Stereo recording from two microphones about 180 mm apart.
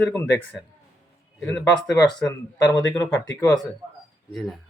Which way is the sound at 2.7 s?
15° left (ahead or behind).